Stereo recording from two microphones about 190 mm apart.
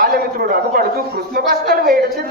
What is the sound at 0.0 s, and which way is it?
Speech, 50° right (ahead or behind).